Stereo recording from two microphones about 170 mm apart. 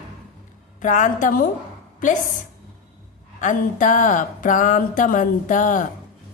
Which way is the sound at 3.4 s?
50° left (ahead or behind).